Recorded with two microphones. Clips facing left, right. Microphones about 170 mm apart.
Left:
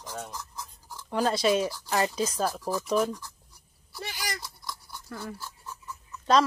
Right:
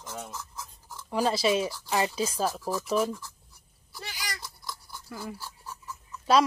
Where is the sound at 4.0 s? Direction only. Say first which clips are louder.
Left 4 dB; 50° left (ahead or behind).